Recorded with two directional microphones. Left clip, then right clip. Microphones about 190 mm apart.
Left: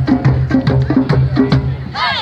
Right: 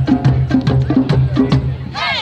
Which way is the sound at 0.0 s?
35° right (ahead or behind).